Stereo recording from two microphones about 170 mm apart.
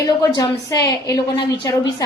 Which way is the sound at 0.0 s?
20° left (ahead or behind).